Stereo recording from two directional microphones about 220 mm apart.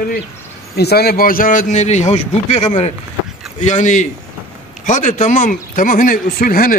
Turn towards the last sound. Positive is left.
turn(degrees=40)  # may be behind; listen again after turning